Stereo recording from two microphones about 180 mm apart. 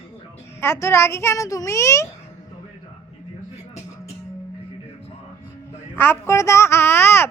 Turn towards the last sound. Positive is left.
turn(degrees=10)  # may be behind; listen again after turning